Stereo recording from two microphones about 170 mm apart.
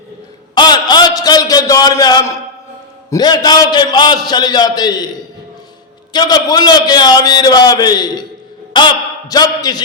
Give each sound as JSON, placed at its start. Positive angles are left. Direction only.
{"t": 0.5, "sound": "a sound", "side_deg": 25}
{"t": 3.1, "sound": "a man's voice", "side_deg": 25}
{"t": 6.1, "sound": "a man's voice", "side_deg": 25}